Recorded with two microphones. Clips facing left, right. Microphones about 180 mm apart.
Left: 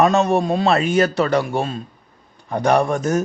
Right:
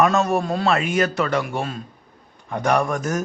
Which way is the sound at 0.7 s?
35° left (ahead or behind).